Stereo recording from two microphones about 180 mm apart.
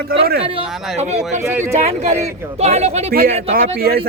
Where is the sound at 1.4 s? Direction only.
10° right (ahead or behind).